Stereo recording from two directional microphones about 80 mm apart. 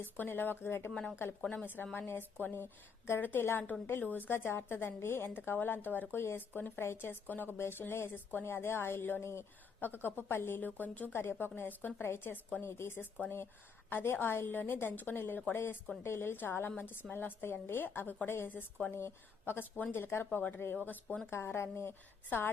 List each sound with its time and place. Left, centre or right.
0.0 s a woman's voice: left
0.9 s speech: centre
1.6 s a woman's voice: left
12.6 s a woman's voice: left